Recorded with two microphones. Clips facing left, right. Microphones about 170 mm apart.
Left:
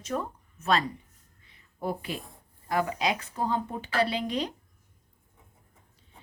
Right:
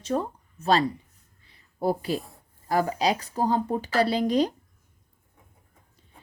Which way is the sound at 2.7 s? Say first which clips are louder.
Right 4 dB; 35° right (ahead or behind).